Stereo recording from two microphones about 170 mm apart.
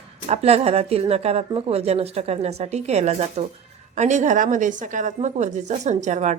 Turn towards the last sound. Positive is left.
turn(degrees=-45)  # may be behind; listen again after turning